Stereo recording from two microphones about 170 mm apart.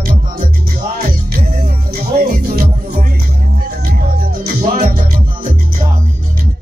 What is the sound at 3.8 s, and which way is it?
Music, 60° right (ahead or behind).